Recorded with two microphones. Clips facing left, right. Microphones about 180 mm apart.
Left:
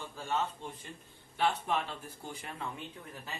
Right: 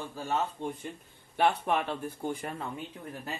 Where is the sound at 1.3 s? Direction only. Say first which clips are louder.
Right 5 dB; 60° right (ahead or behind).